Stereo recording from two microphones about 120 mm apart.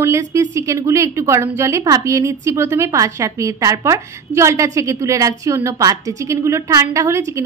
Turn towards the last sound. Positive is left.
turn(degrees=-25)  # may be behind; listen again after turning